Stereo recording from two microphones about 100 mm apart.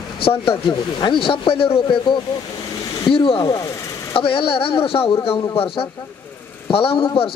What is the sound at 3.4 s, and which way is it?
Vehicle, 30° left (ahead or behind).